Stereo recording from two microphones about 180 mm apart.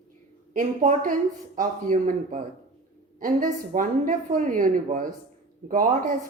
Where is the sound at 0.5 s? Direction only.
45° right (ahead or behind).